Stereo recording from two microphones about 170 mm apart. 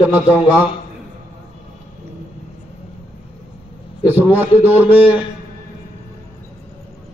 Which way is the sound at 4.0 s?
10° right (ahead or behind).